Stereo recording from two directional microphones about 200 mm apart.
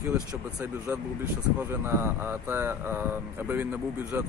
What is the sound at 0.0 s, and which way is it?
Speech, 15° right (ahead or behind).